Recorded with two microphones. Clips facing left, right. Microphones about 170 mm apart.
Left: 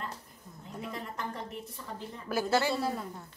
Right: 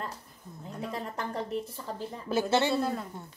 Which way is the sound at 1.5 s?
30° right (ahead or behind).